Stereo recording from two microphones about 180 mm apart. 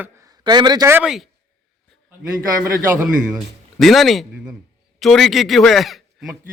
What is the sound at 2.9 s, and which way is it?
A man's voice, 5° right (ahead or behind).